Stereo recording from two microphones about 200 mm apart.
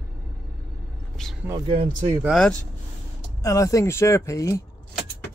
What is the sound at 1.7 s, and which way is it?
Speech, 25° right (ahead or behind).